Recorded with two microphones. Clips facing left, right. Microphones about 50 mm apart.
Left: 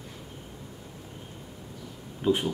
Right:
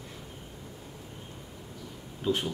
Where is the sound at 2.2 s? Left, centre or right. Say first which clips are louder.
Left 4 dB; left.